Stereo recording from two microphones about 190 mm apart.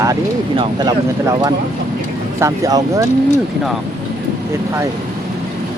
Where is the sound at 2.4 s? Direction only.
20° right (ahead or behind).